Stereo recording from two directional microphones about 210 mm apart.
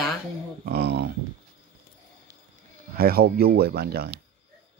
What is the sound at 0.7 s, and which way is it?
Speech, 50° right (ahead or behind).